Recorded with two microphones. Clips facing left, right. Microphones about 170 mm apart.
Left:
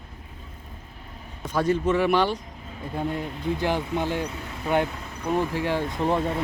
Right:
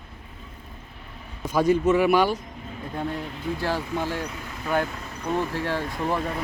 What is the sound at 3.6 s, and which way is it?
Speech, 20° left (ahead or behind).